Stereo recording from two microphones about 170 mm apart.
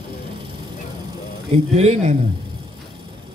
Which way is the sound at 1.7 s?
40° right (ahead or behind).